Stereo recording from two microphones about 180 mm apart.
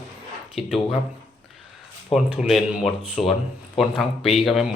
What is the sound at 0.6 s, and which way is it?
Speech, centre (ahead or behind).